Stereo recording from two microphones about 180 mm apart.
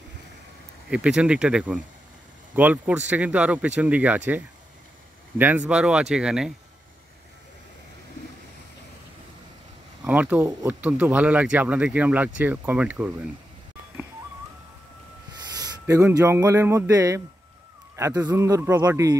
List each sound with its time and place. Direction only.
0.8 s speech: 5° right (ahead or behind)
5.4 s speech: 10° right (ahead or behind)
10.0 s speech: 10° right (ahead or behind)
15.5 s a man's voice: 20° right (ahead or behind)